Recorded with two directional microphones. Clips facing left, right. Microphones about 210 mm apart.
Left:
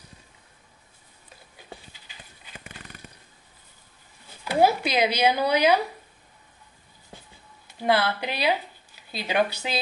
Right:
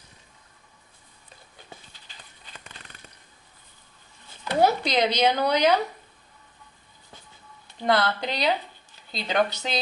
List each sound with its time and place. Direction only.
4.5 s speech: 5° left (ahead or behind)
7.6 s speech: 10° left (ahead or behind)